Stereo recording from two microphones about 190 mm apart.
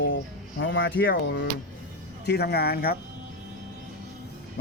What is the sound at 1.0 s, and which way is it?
Speech, 65° left (ahead or behind).